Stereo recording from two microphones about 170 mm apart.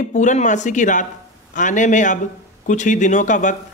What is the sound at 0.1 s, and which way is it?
Speech, 45° left (ahead or behind).